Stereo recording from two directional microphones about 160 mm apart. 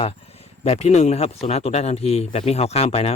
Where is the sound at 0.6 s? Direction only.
40° left (ahead or behind).